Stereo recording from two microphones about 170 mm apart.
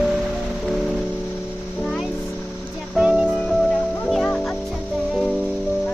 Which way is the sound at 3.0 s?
5° right (ahead or behind).